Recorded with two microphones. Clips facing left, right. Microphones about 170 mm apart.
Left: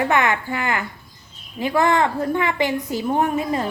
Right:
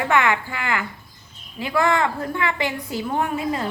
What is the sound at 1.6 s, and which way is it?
A woman's voice, 20° left (ahead or behind).